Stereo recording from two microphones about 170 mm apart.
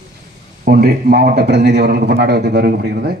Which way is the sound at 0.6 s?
70° right (ahead or behind).